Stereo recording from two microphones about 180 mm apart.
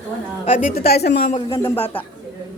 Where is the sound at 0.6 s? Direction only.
55° left (ahead or behind).